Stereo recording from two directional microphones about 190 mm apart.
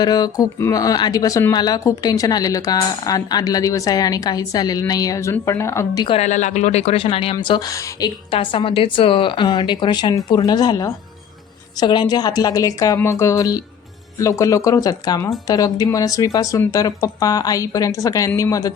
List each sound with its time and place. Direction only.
0.0 s speech: 20° left (ahead or behind)
6.1 s speech: 40° left (ahead or behind); by 18.7 s 15° left (ahead or behind)